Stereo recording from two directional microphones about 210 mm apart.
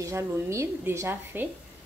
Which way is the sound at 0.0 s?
15° right (ahead or behind).